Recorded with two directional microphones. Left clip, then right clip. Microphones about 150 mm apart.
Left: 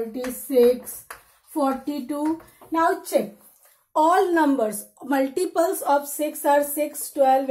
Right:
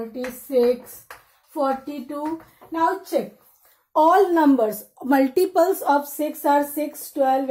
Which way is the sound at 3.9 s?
15° right (ahead or behind).